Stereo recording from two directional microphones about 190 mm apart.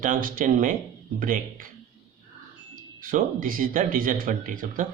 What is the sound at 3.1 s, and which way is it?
A man's voice, 45° right (ahead or behind).